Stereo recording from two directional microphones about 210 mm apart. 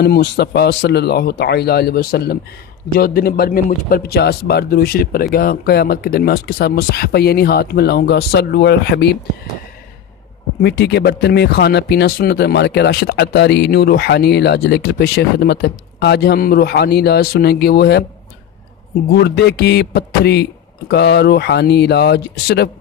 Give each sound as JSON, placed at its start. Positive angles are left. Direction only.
{"t": 0.0, "sound": "speech", "side_deg": 50}
{"t": 10.6, "sound": "speech", "side_deg": 50}
{"t": 19.2, "sound": "speech", "side_deg": 50}